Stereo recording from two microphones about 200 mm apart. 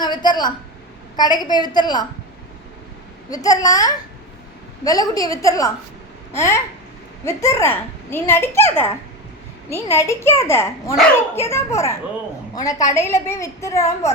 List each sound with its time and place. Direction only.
0.0 s a woman's voice: 20° left (ahead or behind)
3.2 s a woman's voice: 20° left (ahead or behind)